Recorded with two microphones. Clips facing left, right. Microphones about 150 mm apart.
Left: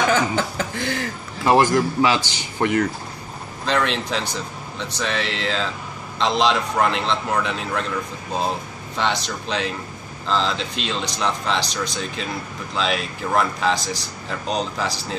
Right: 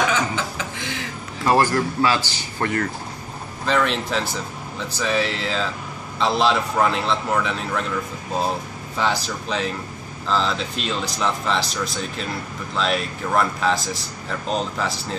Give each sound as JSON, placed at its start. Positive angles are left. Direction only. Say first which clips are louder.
{"t": 0.4, "sound": "a sound", "louder": "left 4 dB", "side_deg": 45}
{"t": 1.4, "sound": "a man's voice", "louder": "left 2 dB", "side_deg": 15}
{"t": 3.6, "sound": "speech", "louder": "right 1 dB", "side_deg": 0}
{"t": 8.9, "sound": "speech", "louder": "even", "side_deg": -5}